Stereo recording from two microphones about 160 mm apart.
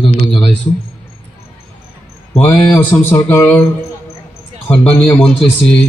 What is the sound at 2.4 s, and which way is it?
Mantra, 10° left (ahead or behind).